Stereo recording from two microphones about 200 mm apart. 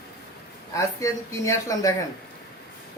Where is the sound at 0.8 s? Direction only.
15° left (ahead or behind).